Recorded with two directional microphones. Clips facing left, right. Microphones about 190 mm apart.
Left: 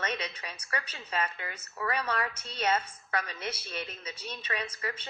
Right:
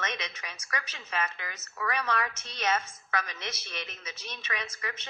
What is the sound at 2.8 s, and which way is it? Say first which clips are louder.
Speech: left 1 dB; 10° left (ahead or behind).